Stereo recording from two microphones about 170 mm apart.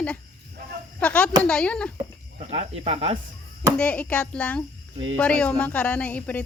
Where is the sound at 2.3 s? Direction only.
35° right (ahead or behind).